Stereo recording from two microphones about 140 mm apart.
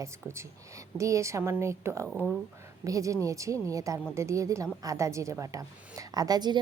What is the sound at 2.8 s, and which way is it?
A woman's voice, 25° right (ahead or behind).